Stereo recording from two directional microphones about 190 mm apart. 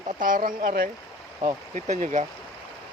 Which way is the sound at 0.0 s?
40° right (ahead or behind).